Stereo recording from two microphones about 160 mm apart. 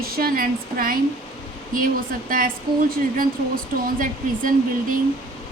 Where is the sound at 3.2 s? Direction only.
60° right (ahead or behind).